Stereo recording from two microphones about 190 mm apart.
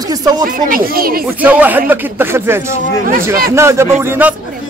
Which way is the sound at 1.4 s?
10° right (ahead or behind).